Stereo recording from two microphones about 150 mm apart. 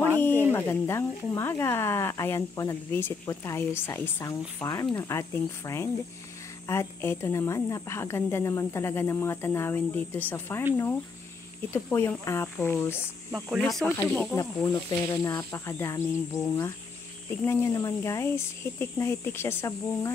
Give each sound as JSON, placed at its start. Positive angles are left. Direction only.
{"t": 0.2, "sound": "speech", "side_deg": 15}
{"t": 11.7, "sound": "speech", "side_deg": 15}
{"t": 13.6, "sound": "speech", "side_deg": 0}
{"t": 14.3, "sound": "speech", "side_deg": 20}